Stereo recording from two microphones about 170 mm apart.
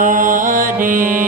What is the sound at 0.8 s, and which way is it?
Music, 50° right (ahead or behind).